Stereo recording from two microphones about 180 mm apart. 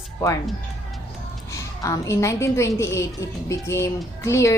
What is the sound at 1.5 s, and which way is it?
A woman's voice, 15° left (ahead or behind).